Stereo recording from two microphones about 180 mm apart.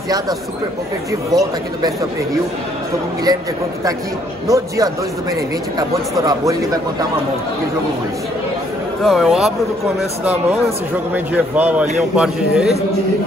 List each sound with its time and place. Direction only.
1.3 s a man's voice: 20° right (ahead or behind)
4.5 s a man's voice: 20° right (ahead or behind)
9.0 s a man's voice: centre (ahead or behind)